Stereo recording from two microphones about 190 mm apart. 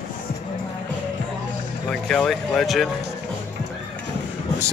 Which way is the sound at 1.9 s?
5° left (ahead or behind).